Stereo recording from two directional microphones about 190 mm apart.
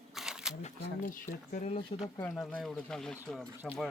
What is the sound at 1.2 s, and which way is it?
Speech, 40° left (ahead or behind).